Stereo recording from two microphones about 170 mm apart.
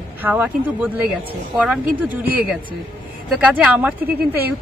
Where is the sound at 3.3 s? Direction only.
5° right (ahead or behind).